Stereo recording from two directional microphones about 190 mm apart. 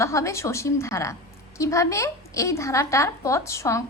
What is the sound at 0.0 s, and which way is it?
A woman's voice, 15° left (ahead or behind).